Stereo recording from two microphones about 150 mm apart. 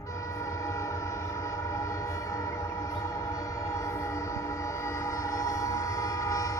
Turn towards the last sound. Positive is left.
turn(degrees=20)  # may be behind; listen again after turning